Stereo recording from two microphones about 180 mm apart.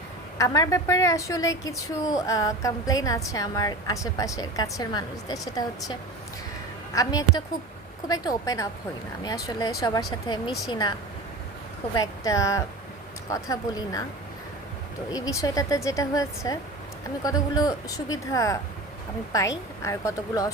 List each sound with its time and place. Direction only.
0.3 s a woman's voice: 20° left (ahead or behind)
11.9 s a woman's voice: 20° left (ahead or behind)
15.1 s a woman's voice: 20° left (ahead or behind)